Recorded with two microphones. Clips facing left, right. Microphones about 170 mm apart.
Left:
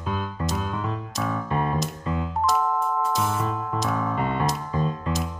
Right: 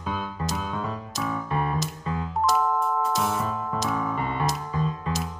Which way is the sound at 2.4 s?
Centre (ahead or behind).